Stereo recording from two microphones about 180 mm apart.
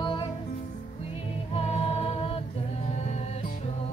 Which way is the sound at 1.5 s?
30° left (ahead or behind).